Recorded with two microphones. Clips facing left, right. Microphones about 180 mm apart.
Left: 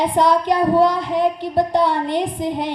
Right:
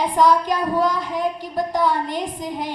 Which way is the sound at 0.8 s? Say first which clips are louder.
Left 5 dB; 65° left (ahead or behind).